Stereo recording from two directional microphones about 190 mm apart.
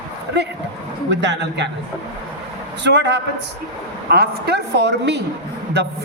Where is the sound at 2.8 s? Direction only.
65° right (ahead or behind).